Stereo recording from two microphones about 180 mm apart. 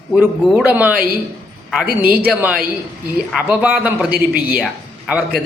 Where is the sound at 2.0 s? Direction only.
10° right (ahead or behind).